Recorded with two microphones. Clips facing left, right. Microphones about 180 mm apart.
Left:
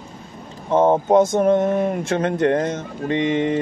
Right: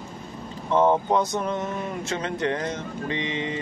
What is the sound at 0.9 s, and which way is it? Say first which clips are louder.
Speech: left 7 dB; 45° left (ahead or behind).